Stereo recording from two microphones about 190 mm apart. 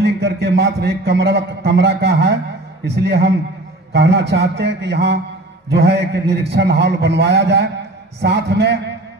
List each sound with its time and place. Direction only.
0.0 s a man's voice: 65° right (ahead or behind)